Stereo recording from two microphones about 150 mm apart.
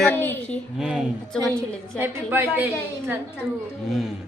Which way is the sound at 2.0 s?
15° right (ahead or behind).